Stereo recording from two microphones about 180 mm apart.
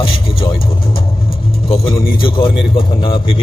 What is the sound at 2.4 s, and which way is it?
A man's voice, 30° left (ahead or behind).